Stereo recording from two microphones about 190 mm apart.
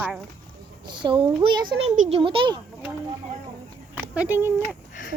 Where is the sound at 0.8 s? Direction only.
25° right (ahead or behind).